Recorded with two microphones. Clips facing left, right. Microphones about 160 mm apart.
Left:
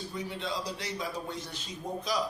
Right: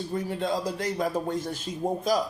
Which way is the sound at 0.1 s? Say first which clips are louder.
Right 9 dB; 50° right (ahead or behind).